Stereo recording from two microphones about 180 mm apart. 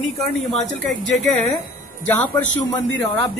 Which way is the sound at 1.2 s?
Centre (ahead or behind).